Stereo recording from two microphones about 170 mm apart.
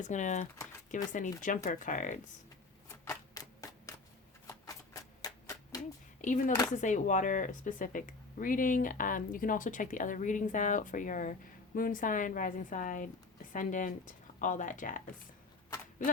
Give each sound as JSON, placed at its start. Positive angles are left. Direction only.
{"t": 0.0, "sound": "speech", "side_deg": 45}
{"t": 3.0, "sound": "typewriter", "side_deg": 20}
{"t": 4.4, "sound": "a sound", "side_deg": 20}
{"t": 6.2, "sound": "speech", "side_deg": 45}